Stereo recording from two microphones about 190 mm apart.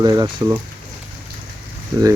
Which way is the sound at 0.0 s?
20° right (ahead or behind).